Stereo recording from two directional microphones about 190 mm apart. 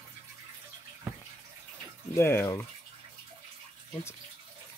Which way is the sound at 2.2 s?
10° left (ahead or behind).